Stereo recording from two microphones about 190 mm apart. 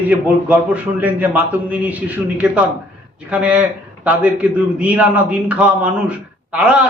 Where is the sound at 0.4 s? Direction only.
10° right (ahead or behind).